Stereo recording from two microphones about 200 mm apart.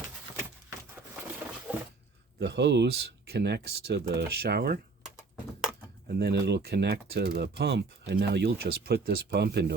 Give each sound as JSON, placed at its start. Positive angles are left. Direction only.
{"t": 2.4, "sound": "speech", "side_deg": -55}
{"t": 5.0, "sound": "computer keyboard", "side_deg": 0}
{"t": 6.1, "sound": "speech", "side_deg": -55}